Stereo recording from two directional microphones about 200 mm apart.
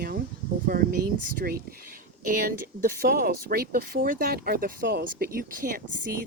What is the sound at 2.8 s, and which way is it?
Speech, 50° right (ahead or behind).